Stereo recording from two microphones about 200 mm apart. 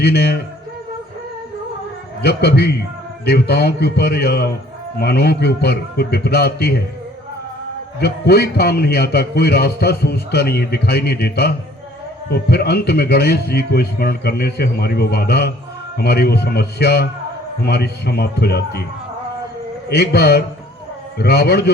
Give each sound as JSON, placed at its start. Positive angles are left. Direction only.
{"t": 0.0, "sound": "a man's voice", "side_deg": 55}
{"t": 2.2, "sound": "a man's voice", "side_deg": 55}
{"t": 7.9, "sound": "a man's voice", "side_deg": 55}
{"t": 19.9, "sound": "a man's voice", "side_deg": 55}